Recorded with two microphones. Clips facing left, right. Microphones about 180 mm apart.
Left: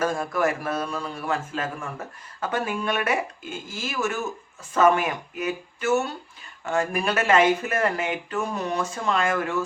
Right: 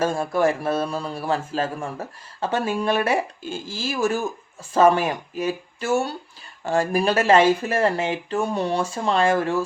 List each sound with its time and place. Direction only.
0.0 s a man's voice: 30° right (ahead or behind)